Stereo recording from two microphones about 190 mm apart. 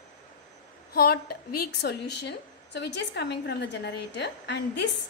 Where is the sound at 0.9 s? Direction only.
55° left (ahead or behind).